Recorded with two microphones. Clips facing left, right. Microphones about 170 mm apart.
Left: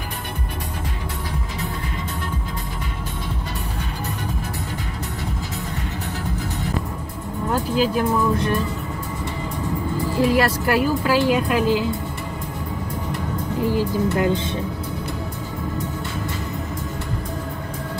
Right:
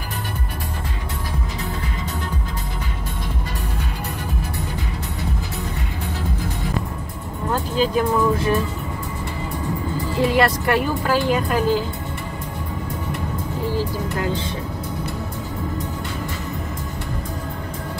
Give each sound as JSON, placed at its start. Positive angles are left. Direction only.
{"t": 7.5, "sound": "speech", "side_deg": 5}
{"t": 10.1, "sound": "a woman's voice", "side_deg": 0}
{"t": 13.7, "sound": "speech", "side_deg": 20}